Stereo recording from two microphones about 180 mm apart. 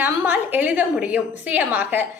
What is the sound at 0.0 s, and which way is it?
A woman's voice, 10° right (ahead or behind).